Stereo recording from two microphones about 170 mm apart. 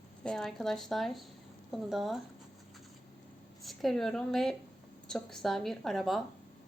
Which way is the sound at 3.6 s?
Centre (ahead or behind).